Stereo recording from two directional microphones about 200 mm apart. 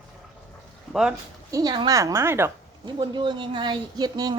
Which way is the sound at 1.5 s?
20° right (ahead or behind).